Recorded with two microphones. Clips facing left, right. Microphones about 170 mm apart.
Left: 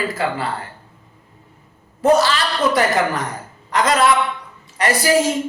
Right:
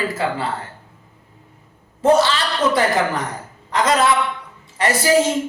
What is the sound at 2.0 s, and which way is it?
A woman's voice, 25° right (ahead or behind).